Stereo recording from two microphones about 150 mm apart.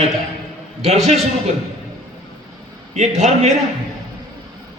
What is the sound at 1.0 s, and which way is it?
Speech, centre (ahead or behind).